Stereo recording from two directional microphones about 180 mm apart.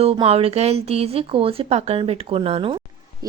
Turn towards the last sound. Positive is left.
turn(degrees=-20)  # may be behind; listen again after turning